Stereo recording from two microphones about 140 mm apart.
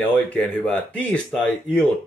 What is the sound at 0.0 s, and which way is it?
Speech, 10° left (ahead or behind).